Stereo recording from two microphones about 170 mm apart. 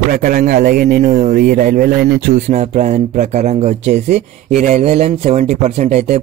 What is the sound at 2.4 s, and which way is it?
Speech, 45° right (ahead or behind).